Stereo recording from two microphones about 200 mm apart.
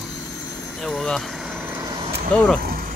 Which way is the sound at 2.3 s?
5° left (ahead or behind).